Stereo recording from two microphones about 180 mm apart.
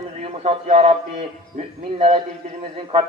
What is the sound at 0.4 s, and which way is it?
Speech, 40° right (ahead or behind).